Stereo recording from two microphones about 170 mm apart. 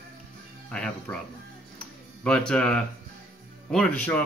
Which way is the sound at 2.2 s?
5° left (ahead or behind).